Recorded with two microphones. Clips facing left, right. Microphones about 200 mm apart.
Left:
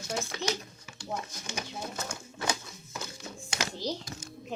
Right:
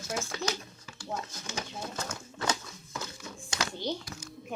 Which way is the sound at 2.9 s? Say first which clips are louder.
Even; 25° left (ahead or behind).